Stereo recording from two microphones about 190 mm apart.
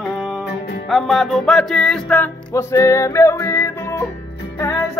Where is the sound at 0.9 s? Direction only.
Centre (ahead or behind).